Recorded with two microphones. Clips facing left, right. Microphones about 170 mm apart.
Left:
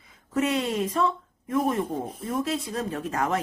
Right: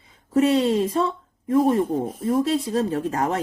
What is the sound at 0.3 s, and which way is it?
Speech, 30° right (ahead or behind).